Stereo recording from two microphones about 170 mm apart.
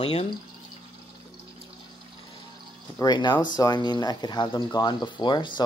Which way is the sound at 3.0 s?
25° left (ahead or behind).